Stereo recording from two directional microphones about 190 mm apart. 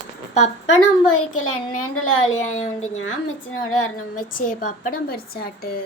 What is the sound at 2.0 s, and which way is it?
Speech, 90° left.